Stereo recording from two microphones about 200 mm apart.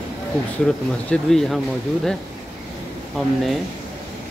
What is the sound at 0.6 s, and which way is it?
Speech, 5° left (ahead or behind).